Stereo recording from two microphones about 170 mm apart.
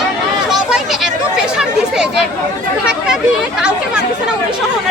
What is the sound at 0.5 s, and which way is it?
Chatter, 5° right (ahead or behind).